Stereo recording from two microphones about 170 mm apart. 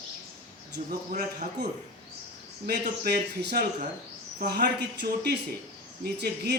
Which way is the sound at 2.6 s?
65° right (ahead or behind).